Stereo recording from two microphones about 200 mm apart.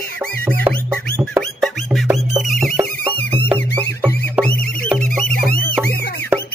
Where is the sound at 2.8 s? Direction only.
25° right (ahead or behind).